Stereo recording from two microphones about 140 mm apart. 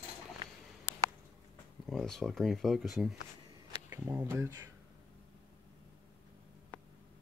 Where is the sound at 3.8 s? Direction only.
15° right (ahead or behind).